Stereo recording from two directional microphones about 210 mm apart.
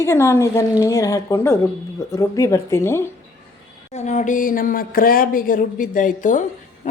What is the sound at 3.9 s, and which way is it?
A woman's voice, 35° left (ahead or behind).